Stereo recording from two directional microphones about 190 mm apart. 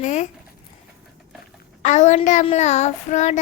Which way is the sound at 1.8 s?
40° left (ahead or behind).